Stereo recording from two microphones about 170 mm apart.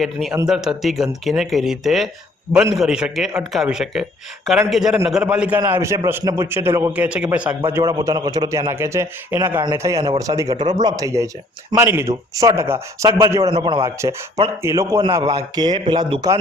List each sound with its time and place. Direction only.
0.0 s a man's voice: centre (ahead or behind)
7.7 s a man's voice: 20° right (ahead or behind)
13.1 s speech: 25° right (ahead or behind)
13.8 s a man's voice: 15° right (ahead or behind)